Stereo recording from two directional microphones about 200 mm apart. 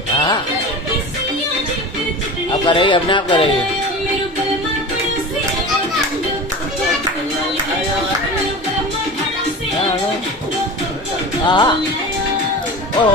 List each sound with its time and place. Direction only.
2.6 s speech: 25° left (ahead or behind)
11.4 s speech: 25° left (ahead or behind)